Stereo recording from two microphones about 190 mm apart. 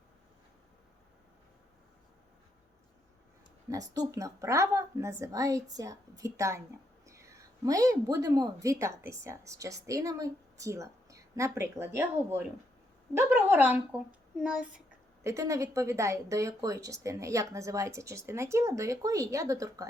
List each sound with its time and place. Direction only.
3.7 s a woman's voice: 20° right (ahead or behind)